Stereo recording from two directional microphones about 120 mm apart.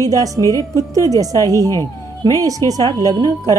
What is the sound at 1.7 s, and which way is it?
Speech, 25° left (ahead or behind).